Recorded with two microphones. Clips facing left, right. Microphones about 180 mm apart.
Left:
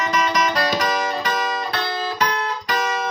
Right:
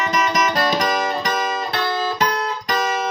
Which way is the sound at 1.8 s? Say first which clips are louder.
Right 3 dB; 45° right (ahead or behind).